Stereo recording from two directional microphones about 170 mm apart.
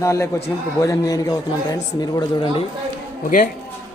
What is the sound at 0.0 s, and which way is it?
A man's voice, 15° left (ahead or behind).